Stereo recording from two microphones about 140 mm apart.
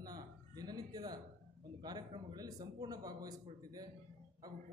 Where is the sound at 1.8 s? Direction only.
30° right (ahead or behind).